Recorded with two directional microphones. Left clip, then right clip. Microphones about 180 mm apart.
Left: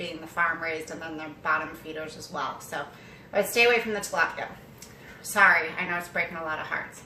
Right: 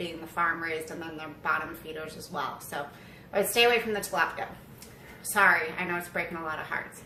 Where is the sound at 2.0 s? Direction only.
15° right (ahead or behind).